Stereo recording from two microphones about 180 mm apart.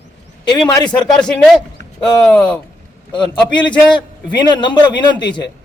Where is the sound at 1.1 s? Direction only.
5° left (ahead or behind).